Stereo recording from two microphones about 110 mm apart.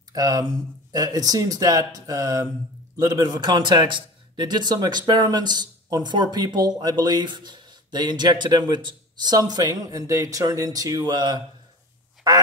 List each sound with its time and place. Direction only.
0.1 s a man's voice: 35° right (ahead or behind)